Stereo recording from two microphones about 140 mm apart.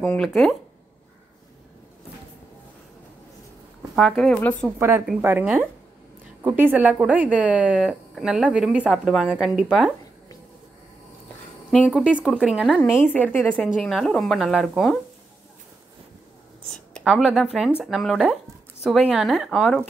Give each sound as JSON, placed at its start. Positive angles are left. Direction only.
{"t": 0.0, "sound": "speech", "side_deg": 5}
{"t": 3.9, "sound": "speech", "side_deg": 0}
{"t": 4.6, "sound": "a woman's voice", "side_deg": -20}
{"t": 11.7, "sound": "speech", "side_deg": -5}
{"t": 12.9, "sound": "a woman's voice", "side_deg": 15}
{"t": 13.6, "sound": "speech", "side_deg": 0}
{"t": 17.0, "sound": "speech", "side_deg": -5}